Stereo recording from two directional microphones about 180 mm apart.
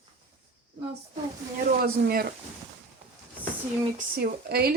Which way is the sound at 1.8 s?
60° right (ahead or behind).